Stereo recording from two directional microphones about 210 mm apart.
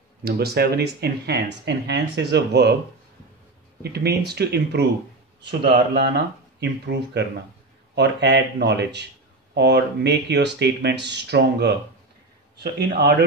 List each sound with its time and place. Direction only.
0.2 s speech: 50° right (ahead or behind)
3.8 s speech: 50° right (ahead or behind)
12.7 s speech: 55° right (ahead or behind)